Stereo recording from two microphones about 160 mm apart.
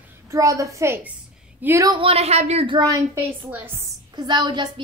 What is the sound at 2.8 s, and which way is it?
A woman's voice, 20° right (ahead or behind).